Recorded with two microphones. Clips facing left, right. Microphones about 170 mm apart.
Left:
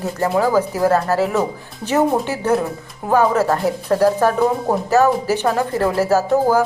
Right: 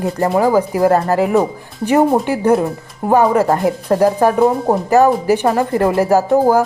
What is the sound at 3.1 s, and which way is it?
Speech, 15° right (ahead or behind).